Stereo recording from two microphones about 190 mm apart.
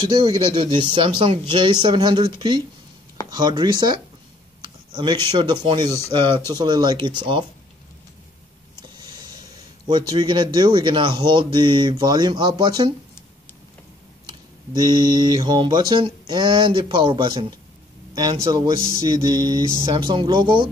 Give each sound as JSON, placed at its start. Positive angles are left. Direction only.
{"t": 0.0, "sound": "speech", "side_deg": -25}
{"t": 5.9, "sound": "speech", "side_deg": 15}
{"t": 6.1, "sound": "speech", "side_deg": -25}
{"t": 9.8, "sound": "speech", "side_deg": -25}
{"t": 14.2, "sound": "speech", "side_deg": -20}
{"t": 19.0, "sound": "mantra", "side_deg": 40}
{"t": 19.3, "sound": "speech", "side_deg": -20}